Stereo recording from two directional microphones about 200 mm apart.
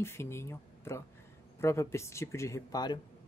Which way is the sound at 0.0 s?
10° left (ahead or behind).